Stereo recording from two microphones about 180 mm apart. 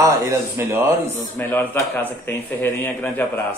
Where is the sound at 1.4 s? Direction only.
10° left (ahead or behind).